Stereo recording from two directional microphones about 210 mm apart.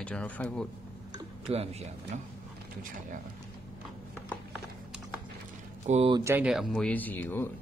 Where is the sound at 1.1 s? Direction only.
30° right (ahead or behind).